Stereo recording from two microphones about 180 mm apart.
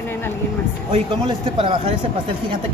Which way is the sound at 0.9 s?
30° right (ahead or behind).